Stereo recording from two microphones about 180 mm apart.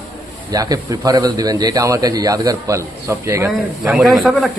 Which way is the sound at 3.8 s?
Centre (ahead or behind).